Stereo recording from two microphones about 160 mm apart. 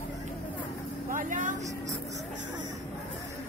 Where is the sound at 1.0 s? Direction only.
55° right (ahead or behind).